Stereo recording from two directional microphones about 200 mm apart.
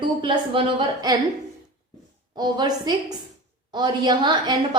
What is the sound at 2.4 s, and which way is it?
A woman's voice, 20° right (ahead or behind).